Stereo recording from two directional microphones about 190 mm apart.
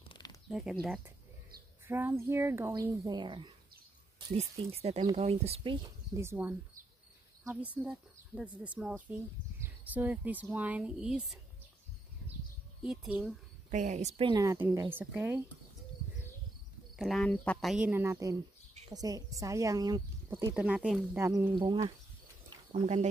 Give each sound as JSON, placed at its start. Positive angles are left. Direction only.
{"t": 0.1, "sound": "a sound", "side_deg": 20}
{"t": 0.5, "sound": "speech", "side_deg": 0}
{"t": 1.9, "sound": "speech", "side_deg": -10}
{"t": 6.1, "sound": "speech", "side_deg": -10}
{"t": 7.8, "sound": "speech", "side_deg": -5}
{"t": 12.8, "sound": "speech", "side_deg": -5}
{"t": 13.7, "sound": "speech", "side_deg": -40}
{"t": 14.3, "sound": "speech", "side_deg": -15}
{"t": 16.9, "sound": "speech", "side_deg": 0}
{"t": 21.5, "sound": "speech", "side_deg": -25}
{"t": 22.7, "sound": "speech", "side_deg": -35}